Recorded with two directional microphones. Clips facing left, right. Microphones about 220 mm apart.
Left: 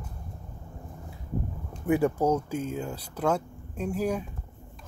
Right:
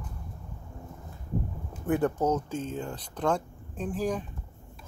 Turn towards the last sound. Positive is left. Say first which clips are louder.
# left 2 dB
turn(degrees=10)  # may be behind; listen again after turning